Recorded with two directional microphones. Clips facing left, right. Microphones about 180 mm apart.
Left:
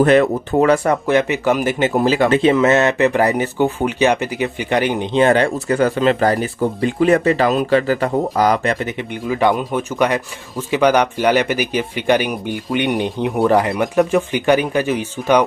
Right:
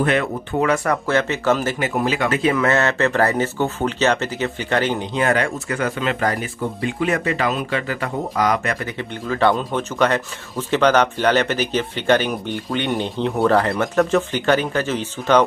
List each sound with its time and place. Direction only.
0.0 s speech: 40° left (ahead or behind)
0.8 s speech: 15° left (ahead or behind)
1.8 s speech: 30° left (ahead or behind); by 5.0 s 15° left (ahead or behind)
5.1 s speech: 30° left (ahead or behind)
9.3 s speech: 10° left (ahead or behind)